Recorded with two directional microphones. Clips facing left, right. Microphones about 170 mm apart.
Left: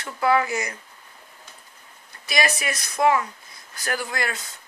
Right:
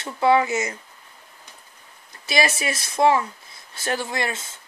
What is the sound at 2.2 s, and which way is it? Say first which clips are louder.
Speech: right 2 dB; 25° right (ahead or behind).